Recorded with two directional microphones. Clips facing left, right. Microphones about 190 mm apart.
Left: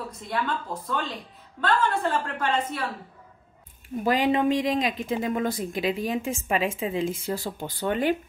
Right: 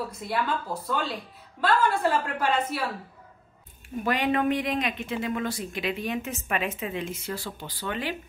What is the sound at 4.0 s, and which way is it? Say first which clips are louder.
Speech: left 3 dB; 30° left (ahead or behind).